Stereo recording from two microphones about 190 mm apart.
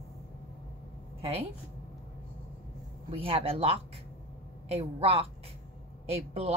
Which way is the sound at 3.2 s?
30° right (ahead or behind).